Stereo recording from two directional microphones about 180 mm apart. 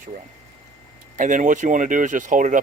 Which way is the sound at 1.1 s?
45° right (ahead or behind).